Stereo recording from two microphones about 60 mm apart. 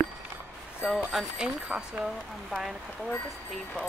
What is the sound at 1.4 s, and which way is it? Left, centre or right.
Speech, centre.